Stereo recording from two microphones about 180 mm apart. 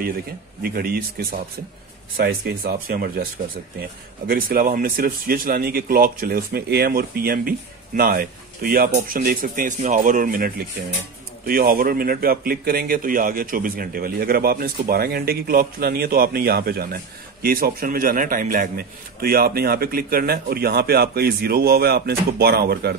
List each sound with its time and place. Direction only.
0.6 s speech: 55° right (ahead or behind)
4.3 s speech: 55° right (ahead or behind)